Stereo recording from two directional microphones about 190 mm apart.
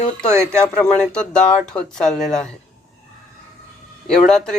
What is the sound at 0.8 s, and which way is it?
Speech, 5° left (ahead or behind).